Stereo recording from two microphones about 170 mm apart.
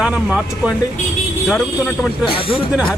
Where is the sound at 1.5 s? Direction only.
5° left (ahead or behind).